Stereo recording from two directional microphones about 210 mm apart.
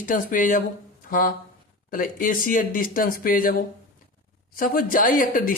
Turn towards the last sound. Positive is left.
turn(degrees=40)  # may be behind; listen again after turning